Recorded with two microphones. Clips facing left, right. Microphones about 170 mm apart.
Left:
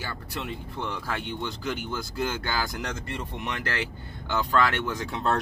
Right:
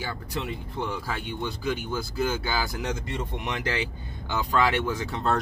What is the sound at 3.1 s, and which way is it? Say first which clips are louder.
Speech: right 2 dB; 15° right (ahead or behind).